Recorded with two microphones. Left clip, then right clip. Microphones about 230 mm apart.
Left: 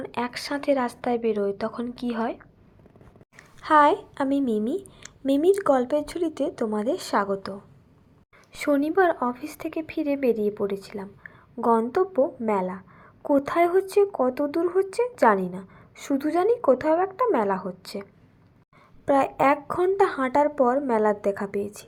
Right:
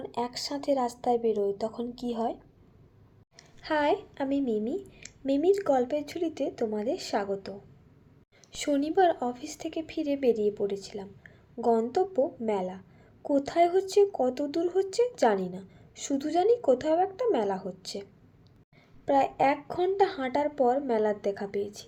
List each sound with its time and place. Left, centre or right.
0.0 s a woman's voice: centre
3.6 s speech: left
8.5 s a woman's voice: centre